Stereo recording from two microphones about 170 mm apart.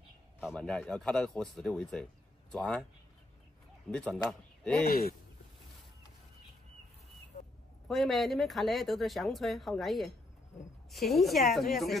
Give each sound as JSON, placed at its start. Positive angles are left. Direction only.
{"t": 0.4, "sound": "speech", "side_deg": 0}
{"t": 3.9, "sound": "speech", "side_deg": 5}
{"t": 4.8, "sound": "speech", "side_deg": 65}
{"t": 7.9, "sound": "speech", "side_deg": 0}